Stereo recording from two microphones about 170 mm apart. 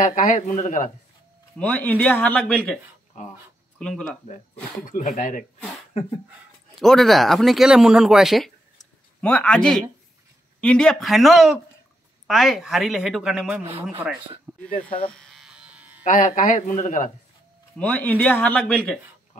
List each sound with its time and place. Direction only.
0.0 s speech: 50° left (ahead or behind)
1.6 s speech: 10° left (ahead or behind)
4.8 s speech: 50° left (ahead or behind)
6.7 s speech: centre (ahead or behind)
15.0 s electric shaver: centre (ahead or behind)
16.0 s speech: 45° left (ahead or behind)
17.7 s speech: 10° left (ahead or behind)